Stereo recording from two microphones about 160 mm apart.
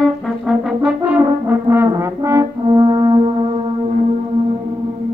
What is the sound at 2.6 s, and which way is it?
French horn, 30° right (ahead or behind).